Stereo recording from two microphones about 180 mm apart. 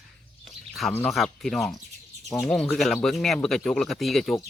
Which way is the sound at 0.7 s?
5° left (ahead or behind).